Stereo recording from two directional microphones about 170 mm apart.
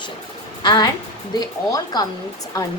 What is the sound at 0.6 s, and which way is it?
A woman's voice, 25° left (ahead or behind).